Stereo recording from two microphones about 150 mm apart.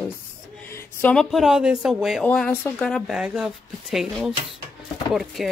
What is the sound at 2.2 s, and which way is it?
Speech, 10° left (ahead or behind).